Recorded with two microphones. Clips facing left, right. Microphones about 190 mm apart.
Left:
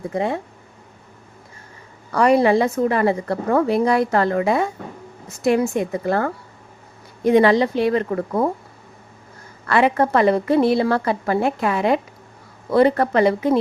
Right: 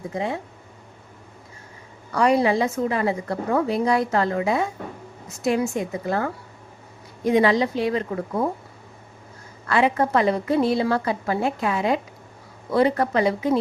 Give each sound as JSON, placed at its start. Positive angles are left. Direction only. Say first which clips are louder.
{"t": 0.1, "sound": "speech", "louder": "left 4 dB", "side_deg": 55}
{"t": 2.1, "sound": "a woman's voice", "louder": "left 4 dB", "side_deg": 60}
{"t": 9.6, "sound": "a woman's voice", "louder": "left 3 dB", "side_deg": 60}